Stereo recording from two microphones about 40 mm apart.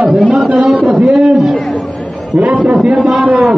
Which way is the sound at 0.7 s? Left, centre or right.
Right.